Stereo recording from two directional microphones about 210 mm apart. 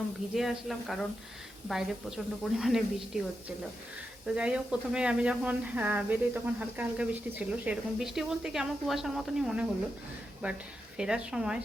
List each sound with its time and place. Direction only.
0.3 s speech: centre (ahead or behind)
4.4 s speech: 5° right (ahead or behind)
10.9 s speech: 5° right (ahead or behind)